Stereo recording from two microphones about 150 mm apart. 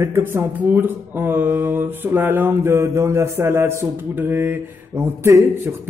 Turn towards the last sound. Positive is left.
turn(degrees=-15)  # may be behind; listen again after turning